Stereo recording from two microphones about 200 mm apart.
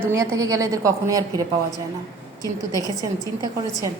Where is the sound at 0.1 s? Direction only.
15° right (ahead or behind).